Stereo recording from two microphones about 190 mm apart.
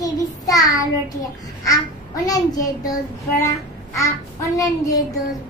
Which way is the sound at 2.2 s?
20° left (ahead or behind).